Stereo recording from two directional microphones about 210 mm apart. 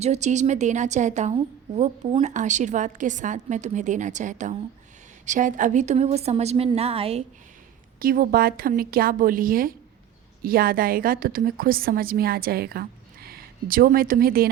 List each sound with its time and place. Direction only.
0.0 s a woman's voice: 30° right (ahead or behind)
7.9 s a woman's voice: 40° right (ahead or behind)